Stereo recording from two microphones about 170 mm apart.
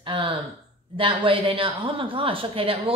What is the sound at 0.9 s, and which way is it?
Speech, 30° right (ahead or behind).